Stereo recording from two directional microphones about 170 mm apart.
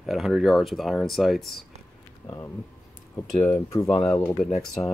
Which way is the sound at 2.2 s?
15° left (ahead or behind).